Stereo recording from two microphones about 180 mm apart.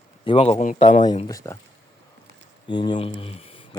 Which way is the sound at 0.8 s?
40° left (ahead or behind).